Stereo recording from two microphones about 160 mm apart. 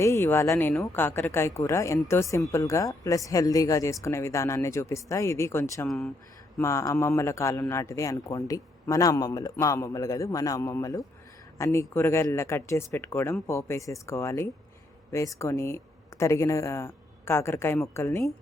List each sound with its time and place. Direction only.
0.0 s a man's voice: 20° left (ahead or behind)